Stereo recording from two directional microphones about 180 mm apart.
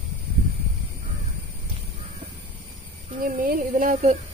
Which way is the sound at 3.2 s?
50° right (ahead or behind).